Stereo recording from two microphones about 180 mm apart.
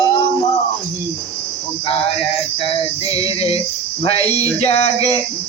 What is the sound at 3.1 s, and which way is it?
Music, 20° right (ahead or behind).